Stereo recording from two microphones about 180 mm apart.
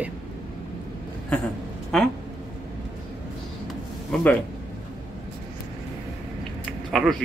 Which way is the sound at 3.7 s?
5° left (ahead or behind).